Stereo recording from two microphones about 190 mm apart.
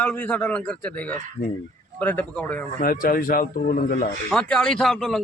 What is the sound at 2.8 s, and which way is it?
Speech, 50° left (ahead or behind).